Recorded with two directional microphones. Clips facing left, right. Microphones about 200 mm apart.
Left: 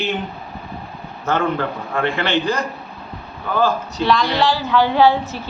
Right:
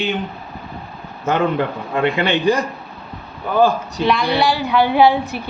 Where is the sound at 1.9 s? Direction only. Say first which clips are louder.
Right 2 dB; 15° right (ahead or behind).